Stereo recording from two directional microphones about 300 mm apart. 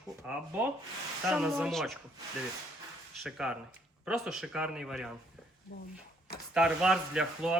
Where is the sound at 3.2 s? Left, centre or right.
Centre.